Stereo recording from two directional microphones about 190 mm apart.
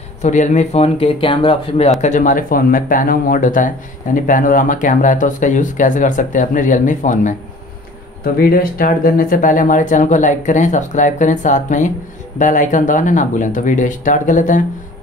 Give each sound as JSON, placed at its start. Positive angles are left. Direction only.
{"t": 0.2, "sound": "speech", "side_deg": 40}
{"t": 2.0, "sound": "speech", "side_deg": 40}